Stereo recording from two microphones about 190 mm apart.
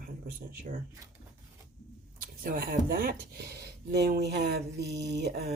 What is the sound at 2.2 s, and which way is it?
Speech, 50° right (ahead or behind).